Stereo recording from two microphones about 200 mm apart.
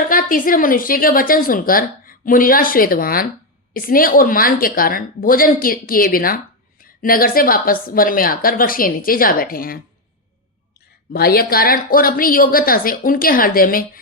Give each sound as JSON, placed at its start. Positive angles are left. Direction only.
{"t": 0.1, "sound": "a woman's voice", "side_deg": 45}
{"t": 11.1, "sound": "a woman's voice", "side_deg": 50}